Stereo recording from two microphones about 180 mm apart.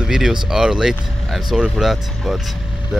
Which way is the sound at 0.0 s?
5° right (ahead or behind).